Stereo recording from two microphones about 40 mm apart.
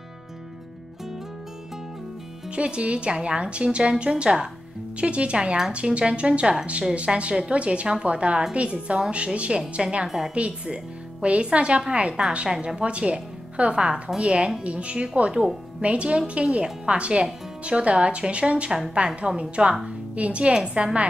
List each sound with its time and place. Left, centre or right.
2.5 s speech: right
10.0 s a woman's voice: centre
10.7 s speech: right
19.0 s speech: centre
20.2 s speech: right